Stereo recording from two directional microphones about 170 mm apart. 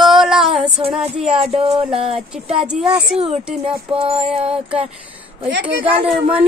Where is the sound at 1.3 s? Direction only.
35° right (ahead or behind).